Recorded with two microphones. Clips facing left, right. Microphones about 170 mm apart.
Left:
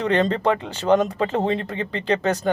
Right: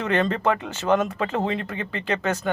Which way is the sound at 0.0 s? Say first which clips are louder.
Left 3 dB; 30° left (ahead or behind).